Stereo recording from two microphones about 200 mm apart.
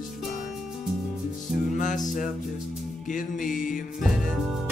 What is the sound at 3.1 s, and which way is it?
Music, 40° left (ahead or behind).